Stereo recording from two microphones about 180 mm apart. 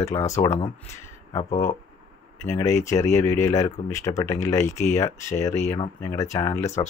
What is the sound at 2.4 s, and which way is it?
Speech, 15° left (ahead or behind).